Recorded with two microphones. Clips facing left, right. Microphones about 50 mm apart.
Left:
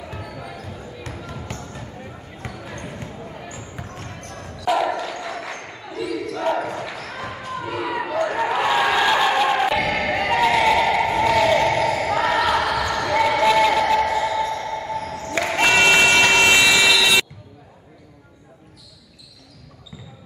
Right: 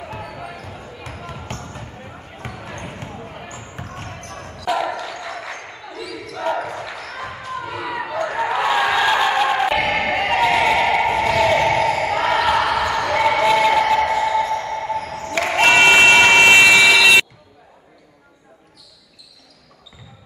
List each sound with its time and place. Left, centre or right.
0.0 s basketball bounce: right
4.6 s basketball bounce: centre
9.8 s music: right
10.4 s a sound: centre
11.2 s basketball bounce: centre
13.4 s a sound: centre
14.1 s basketball bounce: right
15.4 s applause: right